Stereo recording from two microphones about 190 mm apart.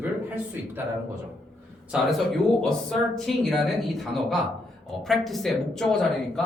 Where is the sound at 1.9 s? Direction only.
Centre (ahead or behind).